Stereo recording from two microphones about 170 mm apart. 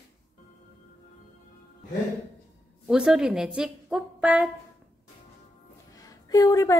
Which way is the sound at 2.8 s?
5° right (ahead or behind).